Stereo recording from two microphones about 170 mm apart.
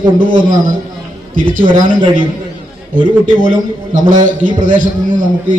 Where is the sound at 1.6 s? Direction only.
30° right (ahead or behind).